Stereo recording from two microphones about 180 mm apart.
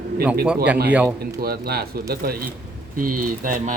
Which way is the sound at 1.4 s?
60° right (ahead or behind).